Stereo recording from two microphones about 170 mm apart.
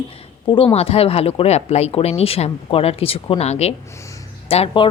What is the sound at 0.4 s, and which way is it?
A woman's voice, 30° left (ahead or behind).